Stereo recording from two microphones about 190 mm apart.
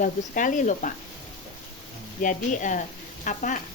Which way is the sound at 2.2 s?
45° left (ahead or behind).